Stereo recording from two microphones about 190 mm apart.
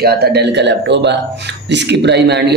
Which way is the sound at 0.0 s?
55° right (ahead or behind).